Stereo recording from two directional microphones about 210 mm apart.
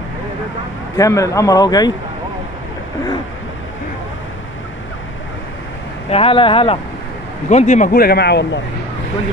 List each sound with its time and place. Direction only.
0.9 s a man's voice: 15° left (ahead or behind)
6.0 s speech: 25° left (ahead or behind); by 8.5 s 50° left (ahead or behind)